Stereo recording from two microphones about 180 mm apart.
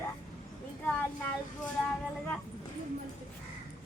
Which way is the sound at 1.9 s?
5° left (ahead or behind).